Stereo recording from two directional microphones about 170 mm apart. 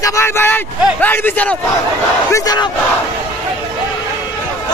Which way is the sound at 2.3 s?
20° left (ahead or behind).